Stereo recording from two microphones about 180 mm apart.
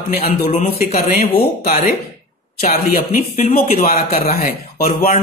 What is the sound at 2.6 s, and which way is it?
Speech, 55° left (ahead or behind).